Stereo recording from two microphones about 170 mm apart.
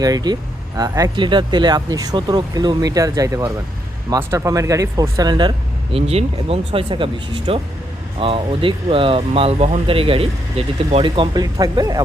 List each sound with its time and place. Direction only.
0.0 s speech: 25° right (ahead or behind)